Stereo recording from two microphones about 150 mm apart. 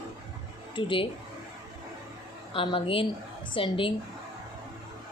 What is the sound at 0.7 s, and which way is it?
Speech, 35° left (ahead or behind).